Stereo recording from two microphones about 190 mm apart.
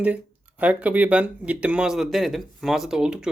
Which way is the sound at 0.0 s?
5° right (ahead or behind).